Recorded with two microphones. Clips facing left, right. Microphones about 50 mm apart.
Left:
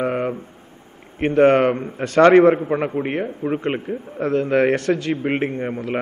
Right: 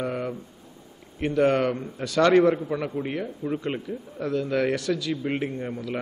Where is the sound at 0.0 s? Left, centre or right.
Left.